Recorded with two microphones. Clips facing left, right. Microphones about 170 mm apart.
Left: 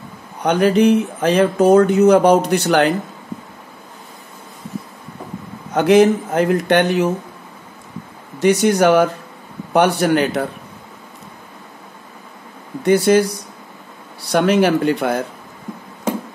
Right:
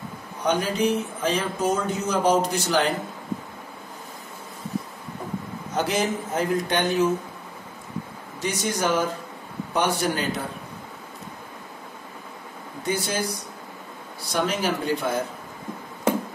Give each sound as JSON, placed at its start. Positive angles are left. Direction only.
{"t": 0.4, "sound": "speech", "side_deg": 70}
{"t": 5.8, "sound": "speech", "side_deg": 65}
{"t": 8.4, "sound": "speech", "side_deg": 70}
{"t": 12.8, "sound": "speech", "side_deg": 70}
{"t": 14.3, "sound": "speech", "side_deg": 70}